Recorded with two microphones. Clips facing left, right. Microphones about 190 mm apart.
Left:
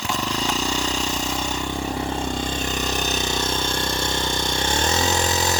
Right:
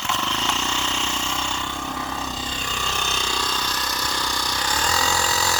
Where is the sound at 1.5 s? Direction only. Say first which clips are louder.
Left 4 dB; 15° left (ahead or behind).